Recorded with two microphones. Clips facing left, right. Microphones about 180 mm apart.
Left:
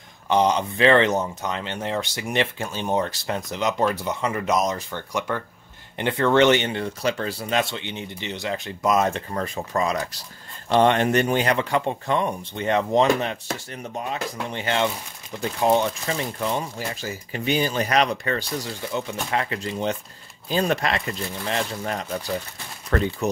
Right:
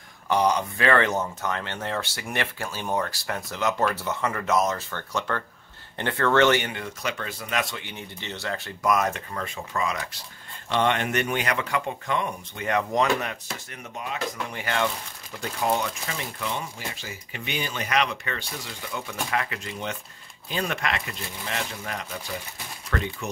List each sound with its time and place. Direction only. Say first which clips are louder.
0.3 s a man's voice: left 3 dB; 20° left (ahead or behind); by 23.3 s 35° left (ahead or behind)